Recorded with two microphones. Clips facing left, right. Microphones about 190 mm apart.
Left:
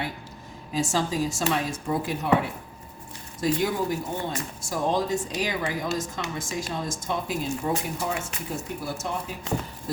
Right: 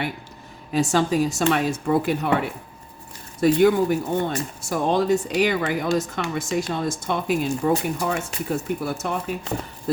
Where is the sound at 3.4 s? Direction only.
60° right (ahead or behind).